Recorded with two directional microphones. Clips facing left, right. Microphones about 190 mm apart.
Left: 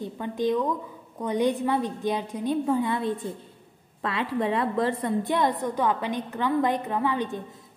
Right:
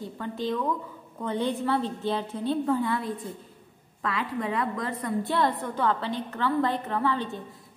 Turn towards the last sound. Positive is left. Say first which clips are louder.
# left 1 dB
turn(degrees=15)  # may be behind; listen again after turning